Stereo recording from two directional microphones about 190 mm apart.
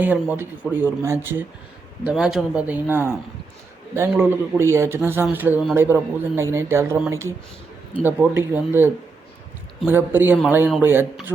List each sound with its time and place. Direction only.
0.0 s speech: 10° right (ahead or behind)